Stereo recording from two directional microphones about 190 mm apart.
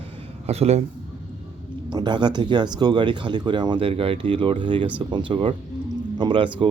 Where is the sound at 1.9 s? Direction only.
25° right (ahead or behind).